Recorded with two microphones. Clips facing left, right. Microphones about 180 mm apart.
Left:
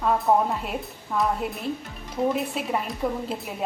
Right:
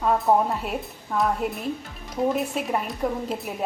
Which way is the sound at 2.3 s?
Centre (ahead or behind).